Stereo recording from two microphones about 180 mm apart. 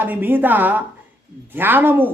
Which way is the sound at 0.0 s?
10° right (ahead or behind).